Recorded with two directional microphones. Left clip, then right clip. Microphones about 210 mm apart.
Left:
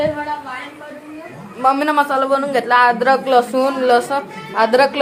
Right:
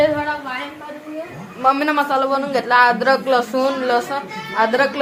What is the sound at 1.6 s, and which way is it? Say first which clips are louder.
A man's voice: left 2 dB; 15° left (ahead or behind).